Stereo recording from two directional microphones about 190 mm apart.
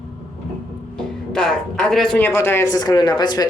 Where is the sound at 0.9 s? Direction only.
5° left (ahead or behind).